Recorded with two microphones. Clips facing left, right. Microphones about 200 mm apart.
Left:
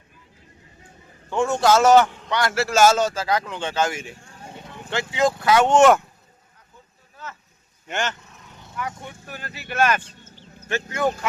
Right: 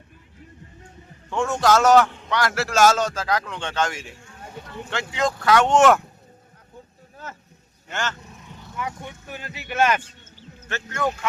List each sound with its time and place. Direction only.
1.3 s a man's voice: centre (ahead or behind)
7.9 s speech: 15° left (ahead or behind)
9.3 s speech: 20° right (ahead or behind)
10.7 s speech: 10° left (ahead or behind)